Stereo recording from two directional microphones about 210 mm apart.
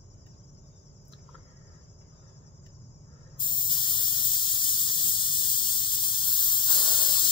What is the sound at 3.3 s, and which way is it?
Squeal, 25° left (ahead or behind).